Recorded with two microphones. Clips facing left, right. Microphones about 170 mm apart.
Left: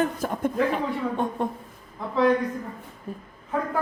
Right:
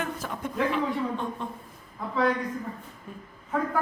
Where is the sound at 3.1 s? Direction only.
35° left (ahead or behind).